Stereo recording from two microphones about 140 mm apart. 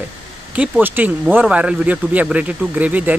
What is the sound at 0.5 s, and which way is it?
Speech, 10° right (ahead or behind).